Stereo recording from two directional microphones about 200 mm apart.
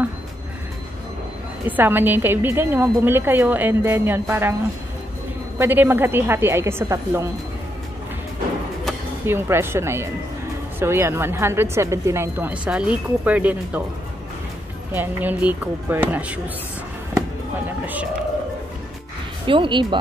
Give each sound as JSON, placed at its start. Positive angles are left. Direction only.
{"t": 1.7, "sound": "speech", "side_deg": -10}
{"t": 5.6, "sound": "speech", "side_deg": -10}
{"t": 9.2, "sound": "speech", "side_deg": -10}
{"t": 14.9, "sound": "speech", "side_deg": -10}
{"t": 19.4, "sound": "speech", "side_deg": -25}